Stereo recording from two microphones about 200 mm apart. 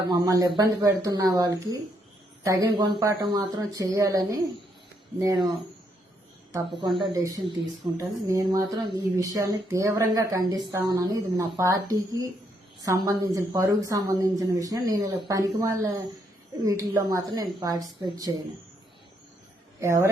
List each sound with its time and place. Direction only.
0.1 s a woman's voice: 15° right (ahead or behind)
6.8 s a woman's voice: 20° right (ahead or behind)
19.8 s a woman's voice: 15° right (ahead or behind)